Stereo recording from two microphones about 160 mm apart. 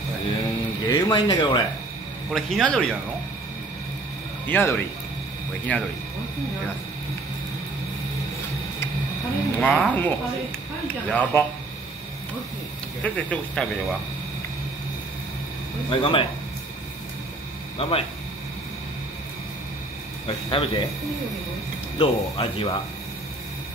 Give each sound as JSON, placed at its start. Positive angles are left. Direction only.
{"t": 0.8, "sound": "speech", "side_deg": 30}
{"t": 2.3, "sound": "speech", "side_deg": 5}
{"t": 4.5, "sound": "speech", "side_deg": 10}
{"t": 9.6, "sound": "speech", "side_deg": 5}
{"t": 13.0, "sound": "speech", "side_deg": 10}
{"t": 15.9, "sound": "speech", "side_deg": 35}
{"t": 17.7, "sound": "speech", "side_deg": 35}
{"t": 20.2, "sound": "speech", "side_deg": 35}
{"t": 21.9, "sound": "speech", "side_deg": 35}